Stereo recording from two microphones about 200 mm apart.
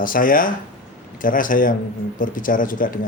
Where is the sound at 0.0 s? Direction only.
45° left (ahead or behind).